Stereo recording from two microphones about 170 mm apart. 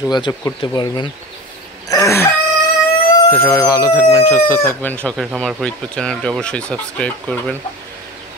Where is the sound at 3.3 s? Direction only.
15° left (ahead or behind).